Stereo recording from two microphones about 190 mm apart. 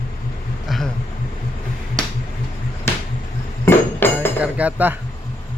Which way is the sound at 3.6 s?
10° left (ahead or behind).